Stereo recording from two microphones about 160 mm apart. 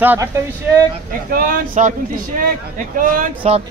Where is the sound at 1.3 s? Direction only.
60° right (ahead or behind).